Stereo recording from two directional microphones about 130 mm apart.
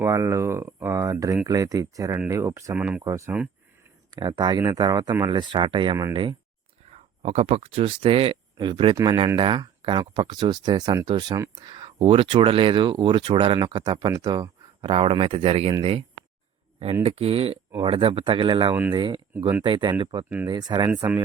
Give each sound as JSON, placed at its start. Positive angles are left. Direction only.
{"t": 0.0, "sound": "speech", "side_deg": -20}
{"t": 2.7, "sound": "speech", "side_deg": -10}
{"t": 3.0, "sound": "speech", "side_deg": -25}
{"t": 6.9, "sound": "speech", "side_deg": -50}
{"t": 14.8, "sound": "speech", "side_deg": -45}
{"t": 18.7, "sound": "speech", "side_deg": -15}
{"t": 18.9, "sound": "speech", "side_deg": -35}